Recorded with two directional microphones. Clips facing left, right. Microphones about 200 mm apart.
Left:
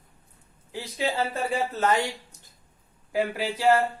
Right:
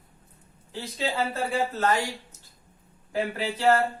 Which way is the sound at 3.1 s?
10° left (ahead or behind).